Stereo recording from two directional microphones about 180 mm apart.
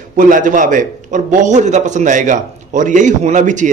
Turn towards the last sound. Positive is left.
turn(degrees=-45)  # may be behind; listen again after turning